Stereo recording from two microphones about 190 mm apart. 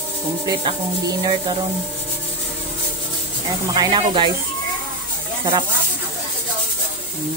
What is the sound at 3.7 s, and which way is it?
Speech, 20° right (ahead or behind).